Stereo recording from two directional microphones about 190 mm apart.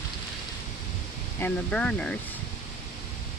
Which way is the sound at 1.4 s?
5° left (ahead or behind).